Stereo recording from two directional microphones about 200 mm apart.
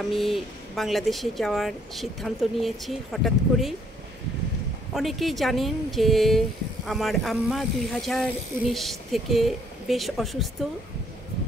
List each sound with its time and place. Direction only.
0.1 s speech: centre (ahead or behind)
4.9 s speech: centre (ahead or behind)